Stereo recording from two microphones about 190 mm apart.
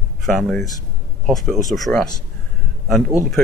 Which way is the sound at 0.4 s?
Centre (ahead or behind).